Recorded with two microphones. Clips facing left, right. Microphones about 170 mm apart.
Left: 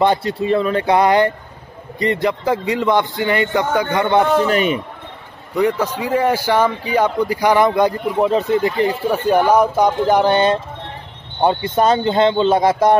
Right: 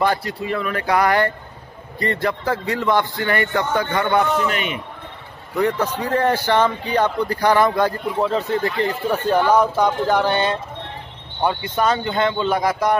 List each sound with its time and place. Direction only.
0.0 s a man's voice: 25° left (ahead or behind)
5.6 s a man's voice: 10° left (ahead or behind); by 12.9 s 25° left (ahead or behind)